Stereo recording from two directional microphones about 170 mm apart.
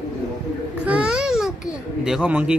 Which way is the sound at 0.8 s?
5° right (ahead or behind).